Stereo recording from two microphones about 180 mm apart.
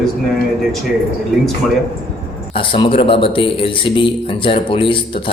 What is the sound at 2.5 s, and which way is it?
A man's voice, 30° left (ahead or behind).